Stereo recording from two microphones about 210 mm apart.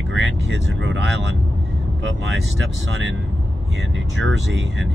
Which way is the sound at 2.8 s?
65° right (ahead or behind).